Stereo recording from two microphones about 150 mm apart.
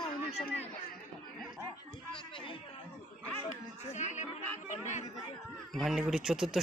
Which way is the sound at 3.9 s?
50° left (ahead or behind).